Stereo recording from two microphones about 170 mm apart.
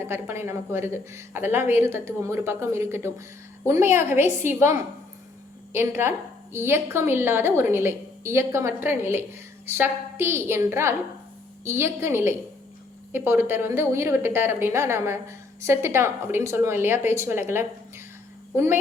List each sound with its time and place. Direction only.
0.0 s a woman's voice: 15° right (ahead or behind)